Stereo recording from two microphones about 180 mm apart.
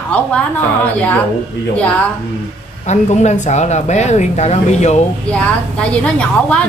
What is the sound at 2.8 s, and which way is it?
Speech, 40° left (ahead or behind).